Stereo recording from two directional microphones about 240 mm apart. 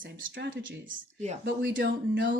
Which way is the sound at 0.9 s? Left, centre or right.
Right.